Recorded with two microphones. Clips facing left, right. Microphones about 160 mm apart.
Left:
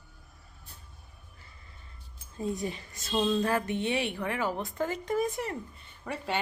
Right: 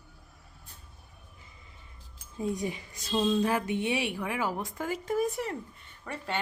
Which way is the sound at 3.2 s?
Centre (ahead or behind).